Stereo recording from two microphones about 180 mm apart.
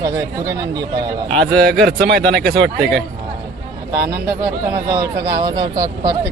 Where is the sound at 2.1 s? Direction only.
65° right (ahead or behind).